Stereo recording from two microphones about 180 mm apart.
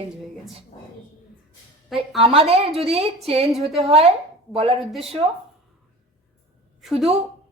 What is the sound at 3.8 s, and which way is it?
A woman's voice, 30° right (ahead or behind).